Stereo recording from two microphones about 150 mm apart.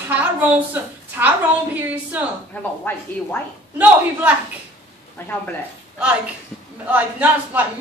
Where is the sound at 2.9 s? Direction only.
15° left (ahead or behind).